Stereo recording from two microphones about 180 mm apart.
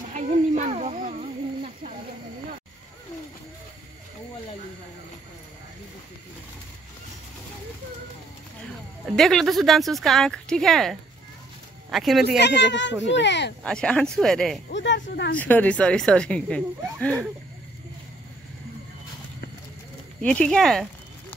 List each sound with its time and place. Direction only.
0.1 s a sound: 40° right (ahead or behind)
9.0 s speech: centre (ahead or behind)
12.4 s a child's voice: 75° left (ahead or behind)
13.7 s speech: 5° left (ahead or behind)
14.7 s speech: 90° left
15.3 s speech: 10° left (ahead or behind)
20.2 s speech: 5° left (ahead or behind)